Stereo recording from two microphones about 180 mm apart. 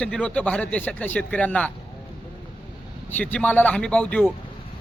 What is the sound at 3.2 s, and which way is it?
Speech, 10° left (ahead or behind).